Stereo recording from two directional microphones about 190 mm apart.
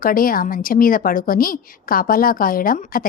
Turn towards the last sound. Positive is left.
turn(degrees=45)  # may be behind; listen again after turning